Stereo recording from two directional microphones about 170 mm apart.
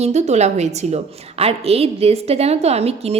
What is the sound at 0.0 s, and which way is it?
A woman's voice, 40° right (ahead or behind).